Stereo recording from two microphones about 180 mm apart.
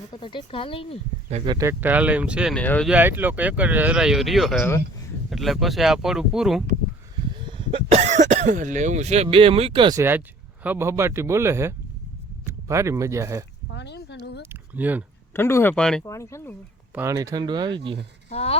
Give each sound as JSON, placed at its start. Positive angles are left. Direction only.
{"t": 0.1, "sound": "speech", "side_deg": 25}
{"t": 1.5, "sound": "a man's voice", "side_deg": -20}
{"t": 2.6, "sound": "speech", "side_deg": 5}
{"t": 2.9, "sound": "a man's voice", "side_deg": -10}
{"t": 7.7, "sound": "speech", "side_deg": -40}
{"t": 10.0, "sound": "a man's voice", "side_deg": -10}
{"t": 13.7, "sound": "a sound", "side_deg": 70}
{"t": 14.5, "sound": "speech", "side_deg": -10}
{"t": 15.3, "sound": "speech", "side_deg": 15}
{"t": 16.0, "sound": "speech", "side_deg": 15}
{"t": 16.9, "sound": "speech", "side_deg": -15}
{"t": 18.3, "sound": "speech", "side_deg": 35}